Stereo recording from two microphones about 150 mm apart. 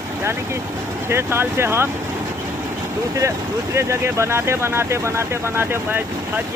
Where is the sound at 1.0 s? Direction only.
15° right (ahead or behind).